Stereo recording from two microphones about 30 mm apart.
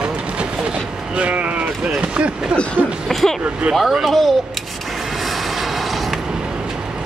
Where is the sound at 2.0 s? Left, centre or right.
Right.